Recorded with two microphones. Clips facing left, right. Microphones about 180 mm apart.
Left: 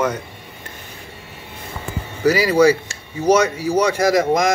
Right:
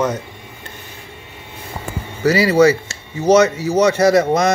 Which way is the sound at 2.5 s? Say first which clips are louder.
Right 1 dB; 10° left (ahead or behind).